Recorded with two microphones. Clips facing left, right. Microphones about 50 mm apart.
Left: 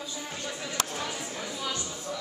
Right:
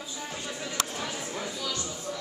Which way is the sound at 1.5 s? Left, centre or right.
Left.